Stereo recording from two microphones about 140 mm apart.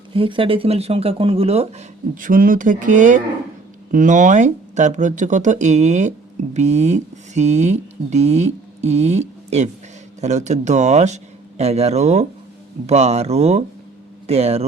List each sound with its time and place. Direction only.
0.1 s speech: 40° right (ahead or behind)
2.2 s speech: 75° right (ahead or behind); by 14.6 s 45° right (ahead or behind)